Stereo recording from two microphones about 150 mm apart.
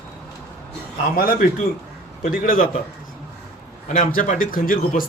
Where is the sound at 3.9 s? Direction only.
65° left (ahead or behind).